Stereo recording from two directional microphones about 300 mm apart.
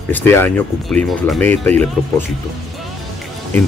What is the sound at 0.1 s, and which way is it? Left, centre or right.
Speech, centre.